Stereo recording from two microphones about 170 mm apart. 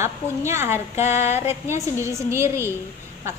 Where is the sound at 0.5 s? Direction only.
15° right (ahead or behind).